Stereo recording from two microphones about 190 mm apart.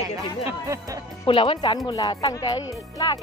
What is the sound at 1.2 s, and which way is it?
Speech, 30° left (ahead or behind).